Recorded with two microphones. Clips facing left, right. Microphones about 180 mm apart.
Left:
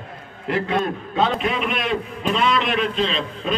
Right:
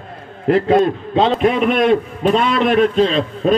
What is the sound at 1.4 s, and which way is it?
A man's voice, 45° right (ahead or behind).